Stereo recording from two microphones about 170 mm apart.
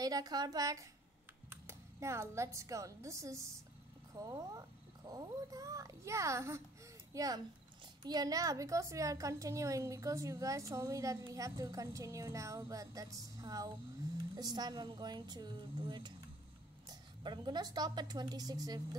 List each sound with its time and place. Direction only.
0.0 s a woman's voice: 20° right (ahead or behind)